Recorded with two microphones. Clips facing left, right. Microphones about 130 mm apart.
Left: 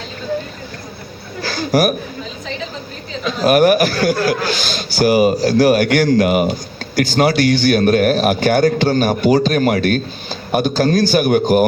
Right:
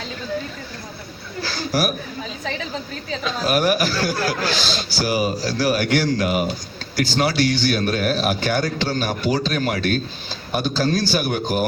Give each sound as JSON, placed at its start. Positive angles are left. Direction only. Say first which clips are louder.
{"t": 1.4, "sound": "chuckle", "louder": "left 7 dB", "side_deg": 55}
{"t": 3.4, "sound": "a man's voice", "louder": "left 8 dB", "side_deg": 55}